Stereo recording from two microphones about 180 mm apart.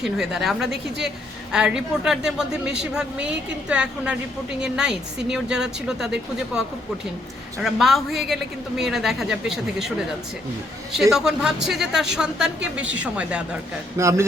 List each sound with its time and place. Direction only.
0.0 s a woman's voice: centre (ahead or behind)
11.1 s a woman's voice: 5° right (ahead or behind)